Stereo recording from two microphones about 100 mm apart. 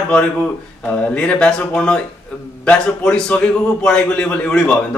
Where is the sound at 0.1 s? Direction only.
10° left (ahead or behind).